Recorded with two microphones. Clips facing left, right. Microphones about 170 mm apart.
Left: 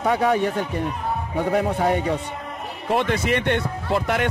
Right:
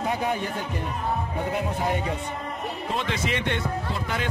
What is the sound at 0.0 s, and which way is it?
Speech, 75° left (ahead or behind).